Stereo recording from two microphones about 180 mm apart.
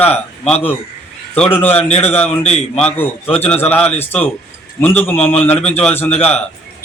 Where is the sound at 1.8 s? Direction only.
35° left (ahead or behind).